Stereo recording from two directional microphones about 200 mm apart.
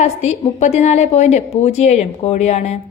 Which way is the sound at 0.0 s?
35° left (ahead or behind).